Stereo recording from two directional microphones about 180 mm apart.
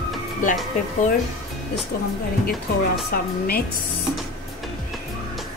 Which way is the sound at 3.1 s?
55° left (ahead or behind).